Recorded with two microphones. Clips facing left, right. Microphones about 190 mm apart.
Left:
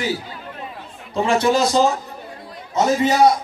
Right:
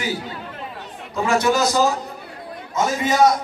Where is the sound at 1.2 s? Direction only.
25° left (ahead or behind).